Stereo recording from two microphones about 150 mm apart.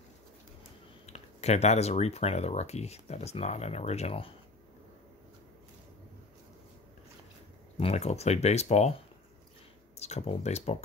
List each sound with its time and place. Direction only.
1.0 s speech: 45° left (ahead or behind)
7.7 s speech: 40° left (ahead or behind)
9.9 s speech: 45° left (ahead or behind)